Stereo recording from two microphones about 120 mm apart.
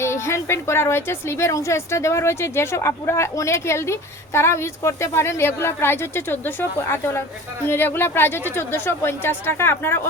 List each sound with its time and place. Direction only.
0.0 s a woman's voice: 25° left (ahead or behind)